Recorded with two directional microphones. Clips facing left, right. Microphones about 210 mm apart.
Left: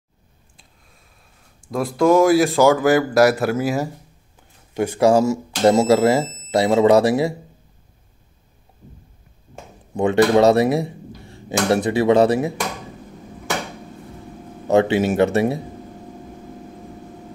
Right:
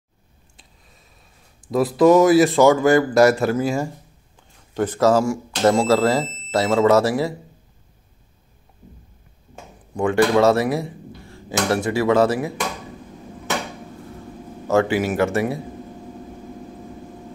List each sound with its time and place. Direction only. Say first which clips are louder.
0.6 s a sound: right 1 dB; centre (ahead or behind)
1.7 s speech: right 2 dB; centre (ahead or behind); by 7.3 s 15° left (ahead or behind)
9.9 s speech: left 2 dB; 20° left (ahead or behind)
11.1 s a sound: left 1 dB; 15° left (ahead or behind)
11.7 s speech: left 3 dB; 20° left (ahead or behind)
14.7 s speech: left 2 dB; 20° left (ahead or behind)